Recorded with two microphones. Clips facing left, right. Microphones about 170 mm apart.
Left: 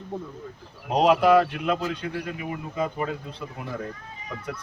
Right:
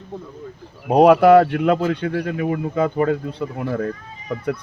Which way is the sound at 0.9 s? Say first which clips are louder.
Right 7 dB; 55° right (ahead or behind).